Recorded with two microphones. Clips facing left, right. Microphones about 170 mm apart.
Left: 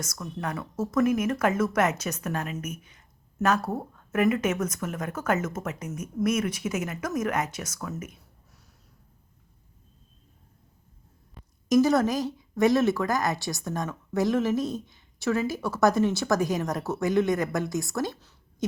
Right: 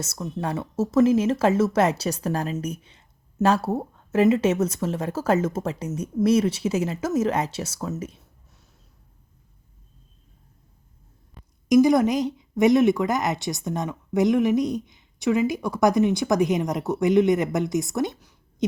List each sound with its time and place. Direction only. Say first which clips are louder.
0.0 s speech: right 4 dB; 25° right (ahead or behind)
11.7 s speech: right 4 dB; 15° right (ahead or behind)